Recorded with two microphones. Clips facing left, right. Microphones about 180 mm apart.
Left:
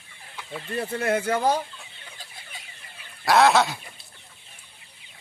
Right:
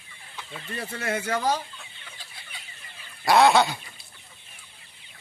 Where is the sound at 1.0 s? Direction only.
55° left (ahead or behind).